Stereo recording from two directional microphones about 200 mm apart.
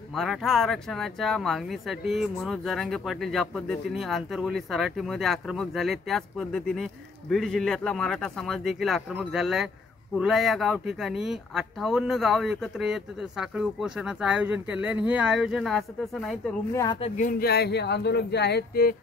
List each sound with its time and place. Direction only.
0.1 s speech: centre (ahead or behind)
16.7 s speech: 20° left (ahead or behind)
17.2 s speech: 45° left (ahead or behind)